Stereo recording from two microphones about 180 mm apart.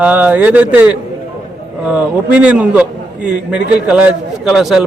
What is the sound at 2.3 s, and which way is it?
A man's voice, 10° right (ahead or behind).